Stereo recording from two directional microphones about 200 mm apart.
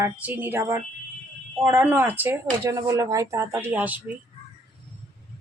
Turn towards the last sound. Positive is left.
turn(degrees=-5)  # may be behind; listen again after turning